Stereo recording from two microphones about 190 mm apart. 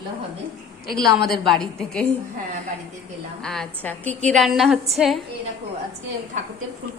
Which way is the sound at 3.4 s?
5° left (ahead or behind).